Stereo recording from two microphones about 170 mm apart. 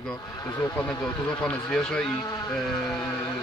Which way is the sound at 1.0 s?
5° left (ahead or behind).